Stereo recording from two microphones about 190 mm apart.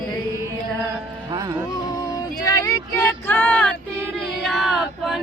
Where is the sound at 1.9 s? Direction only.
15° left (ahead or behind).